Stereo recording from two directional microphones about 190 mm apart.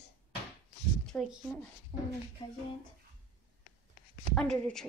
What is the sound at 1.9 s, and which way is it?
Speech, 30° left (ahead or behind).